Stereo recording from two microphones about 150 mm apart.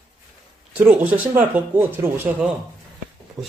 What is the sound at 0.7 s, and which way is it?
Speech, 10° right (ahead or behind).